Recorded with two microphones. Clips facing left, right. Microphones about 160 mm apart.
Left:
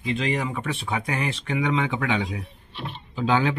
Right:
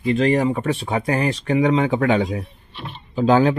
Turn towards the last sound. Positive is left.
turn(degrees=-40)  # may be behind; listen again after turning